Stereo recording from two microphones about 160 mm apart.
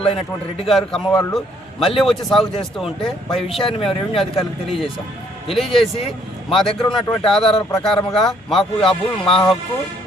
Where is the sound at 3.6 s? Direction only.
35° left (ahead or behind).